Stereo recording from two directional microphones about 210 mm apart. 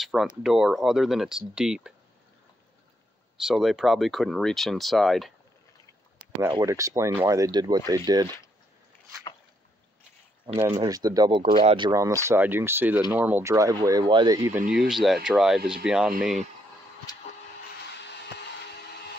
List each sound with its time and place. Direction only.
0.0 s speech: centre (ahead or behind)
3.3 s speech: centre (ahead or behind)
6.5 s speech: 15° right (ahead or behind)
10.4 s speech: 20° right (ahead or behind)
14.7 s speech: centre (ahead or behind)